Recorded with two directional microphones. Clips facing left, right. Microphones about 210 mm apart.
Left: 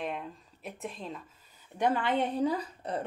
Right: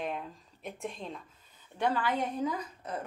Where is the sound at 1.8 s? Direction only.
20° left (ahead or behind).